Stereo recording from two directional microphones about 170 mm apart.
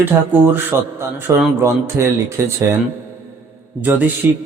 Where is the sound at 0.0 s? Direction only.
10° right (ahead or behind).